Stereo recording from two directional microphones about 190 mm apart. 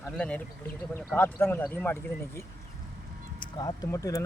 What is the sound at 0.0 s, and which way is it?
Speech, 5° left (ahead or behind).